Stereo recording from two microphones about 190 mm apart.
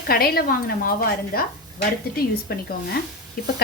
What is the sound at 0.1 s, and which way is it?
Speech, 50° left (ahead or behind).